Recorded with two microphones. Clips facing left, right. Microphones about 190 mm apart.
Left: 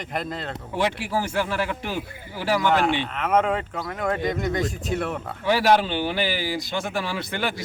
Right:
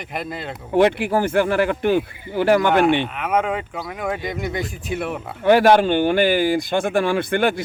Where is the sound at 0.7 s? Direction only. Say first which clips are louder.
Right 9 dB; 55° right (ahead or behind).